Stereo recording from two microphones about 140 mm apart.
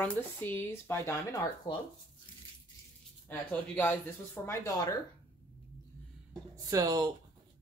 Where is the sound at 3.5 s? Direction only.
15° left (ahead or behind).